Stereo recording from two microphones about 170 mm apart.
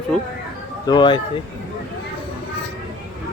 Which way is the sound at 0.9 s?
25° left (ahead or behind).